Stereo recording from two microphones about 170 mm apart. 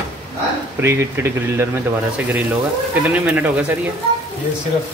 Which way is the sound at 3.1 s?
10° right (ahead or behind).